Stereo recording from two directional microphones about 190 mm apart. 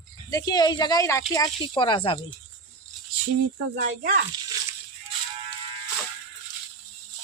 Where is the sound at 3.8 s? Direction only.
45° right (ahead or behind).